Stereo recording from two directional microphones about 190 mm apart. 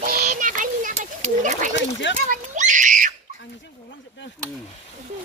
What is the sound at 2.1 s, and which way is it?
Screaming, 40° right (ahead or behind).